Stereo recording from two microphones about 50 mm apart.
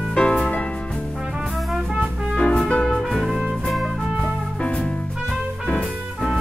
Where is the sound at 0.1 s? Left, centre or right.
Centre.